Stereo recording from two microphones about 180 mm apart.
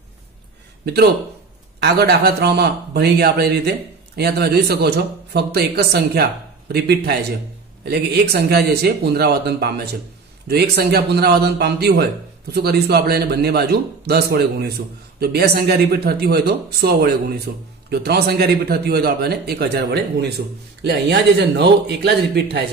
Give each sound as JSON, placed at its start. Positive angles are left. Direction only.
{"t": 1.8, "sound": "a man's voice", "side_deg": -65}